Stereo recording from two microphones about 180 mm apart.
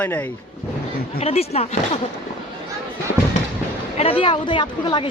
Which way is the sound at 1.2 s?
35° left (ahead or behind).